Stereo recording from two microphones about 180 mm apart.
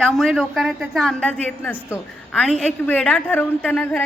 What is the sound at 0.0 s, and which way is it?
A woman's voice, centre (ahead or behind).